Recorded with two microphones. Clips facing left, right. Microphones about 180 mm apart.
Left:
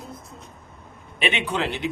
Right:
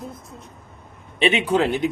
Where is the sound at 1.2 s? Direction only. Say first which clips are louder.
Right 6 dB; 35° right (ahead or behind).